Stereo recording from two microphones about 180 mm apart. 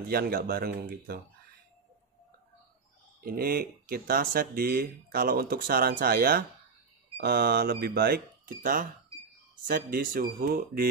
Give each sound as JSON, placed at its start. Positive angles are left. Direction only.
{"t": 0.1, "sound": "speech", "side_deg": -55}
{"t": 3.3, "sound": "speech", "side_deg": -55}